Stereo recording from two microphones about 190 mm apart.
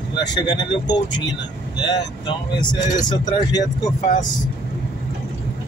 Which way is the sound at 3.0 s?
20° left (ahead or behind).